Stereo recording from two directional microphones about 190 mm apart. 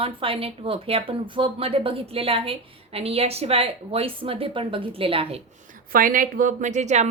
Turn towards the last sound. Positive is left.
turn(degrees=-35)  # may be behind; listen again after turning